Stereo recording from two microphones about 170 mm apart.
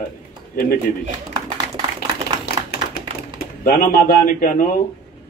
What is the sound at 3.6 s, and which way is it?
A man's voice, 55° left (ahead or behind).